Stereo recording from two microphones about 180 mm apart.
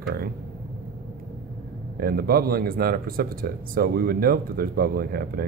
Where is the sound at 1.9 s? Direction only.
55° right (ahead or behind).